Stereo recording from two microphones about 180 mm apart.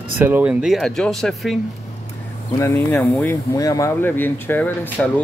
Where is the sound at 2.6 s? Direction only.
15° left (ahead or behind).